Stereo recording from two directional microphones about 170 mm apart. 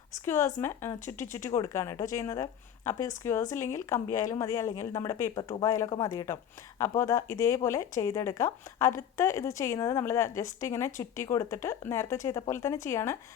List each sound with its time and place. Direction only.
0.1 s speech: 15° left (ahead or behind)